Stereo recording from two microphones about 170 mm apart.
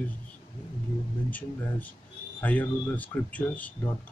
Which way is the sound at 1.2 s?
10° left (ahead or behind).